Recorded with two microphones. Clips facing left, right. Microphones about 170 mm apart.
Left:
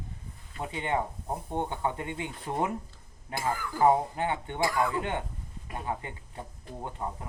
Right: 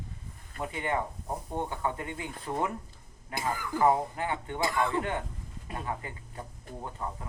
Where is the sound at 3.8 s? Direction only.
25° left (ahead or behind).